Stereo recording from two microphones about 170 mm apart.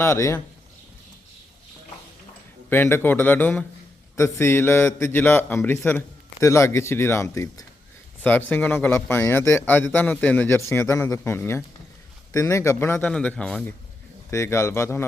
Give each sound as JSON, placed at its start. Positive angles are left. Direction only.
{"t": 0.0, "sound": "a man's voice", "side_deg": 15}
{"t": 2.6, "sound": "a man's voice", "side_deg": 15}
{"t": 14.3, "sound": "a man's voice", "side_deg": 15}